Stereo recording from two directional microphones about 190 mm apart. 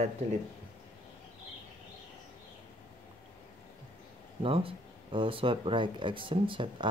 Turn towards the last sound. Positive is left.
turn(degrees=-25)  # may be behind; listen again after turning